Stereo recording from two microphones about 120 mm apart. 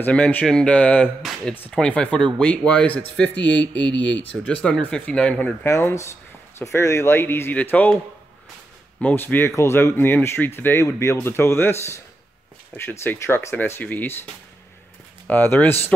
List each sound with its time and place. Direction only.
0.0 s speech: 15° left (ahead or behind)
9.0 s speech: 15° left (ahead or behind)
15.2 s speech: 15° left (ahead or behind)